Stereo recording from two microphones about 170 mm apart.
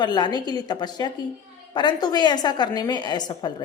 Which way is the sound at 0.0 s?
25° left (ahead or behind).